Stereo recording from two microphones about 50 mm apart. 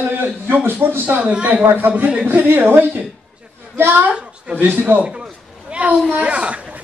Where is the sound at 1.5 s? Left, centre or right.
Right.